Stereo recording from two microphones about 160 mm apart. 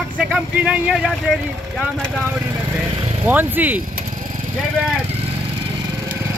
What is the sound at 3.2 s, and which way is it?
Speech, 10° right (ahead or behind).